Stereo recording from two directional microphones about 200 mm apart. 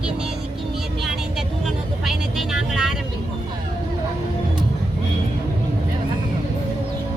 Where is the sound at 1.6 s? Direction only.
Centre (ahead or behind).